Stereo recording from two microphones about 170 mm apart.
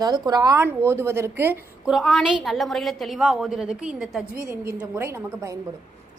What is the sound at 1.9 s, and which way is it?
A woman's voice, centre (ahead or behind).